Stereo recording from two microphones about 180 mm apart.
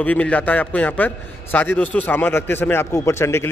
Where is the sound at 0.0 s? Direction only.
10° left (ahead or behind).